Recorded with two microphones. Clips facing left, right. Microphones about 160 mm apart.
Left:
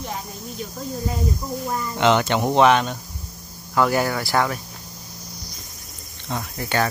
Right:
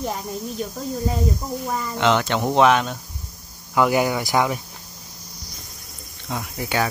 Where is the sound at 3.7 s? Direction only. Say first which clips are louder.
Right 1 dB; 15° right (ahead or behind).